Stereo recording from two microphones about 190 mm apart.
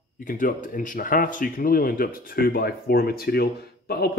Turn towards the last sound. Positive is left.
turn(degrees=55)  # may be behind; listen again after turning